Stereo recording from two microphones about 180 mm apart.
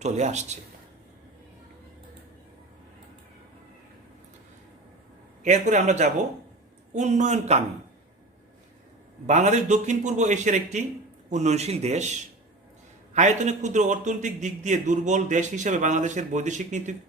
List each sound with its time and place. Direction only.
0.0 s a man's voice: 40° right (ahead or behind)
5.4 s a man's voice: 40° right (ahead or behind)
9.2 s a man's voice: 40° right (ahead or behind)
13.1 s a man's voice: 40° right (ahead or behind)